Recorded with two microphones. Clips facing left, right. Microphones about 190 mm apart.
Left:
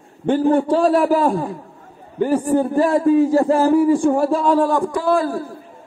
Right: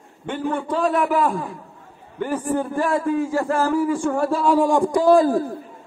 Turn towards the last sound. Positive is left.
turn(degrees=-15)  # may be behind; listen again after turning